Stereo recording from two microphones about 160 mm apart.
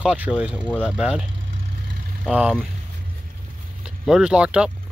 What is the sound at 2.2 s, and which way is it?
Speech, 10° right (ahead or behind).